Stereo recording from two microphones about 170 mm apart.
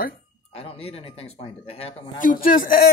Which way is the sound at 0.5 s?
35° left (ahead or behind).